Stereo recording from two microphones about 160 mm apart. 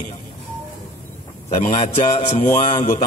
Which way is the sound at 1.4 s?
40° left (ahead or behind).